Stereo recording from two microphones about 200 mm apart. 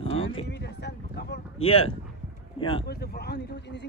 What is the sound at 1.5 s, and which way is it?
Speech, 30° left (ahead or behind).